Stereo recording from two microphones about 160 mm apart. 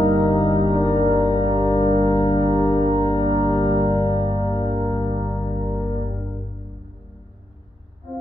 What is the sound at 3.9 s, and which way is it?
Music, 20° left (ahead or behind).